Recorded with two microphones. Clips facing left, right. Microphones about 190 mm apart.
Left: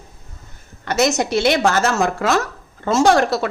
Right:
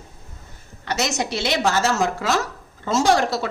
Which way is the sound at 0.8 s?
50° left (ahead or behind).